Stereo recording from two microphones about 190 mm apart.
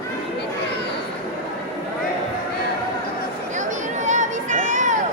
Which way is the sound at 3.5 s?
40° right (ahead or behind).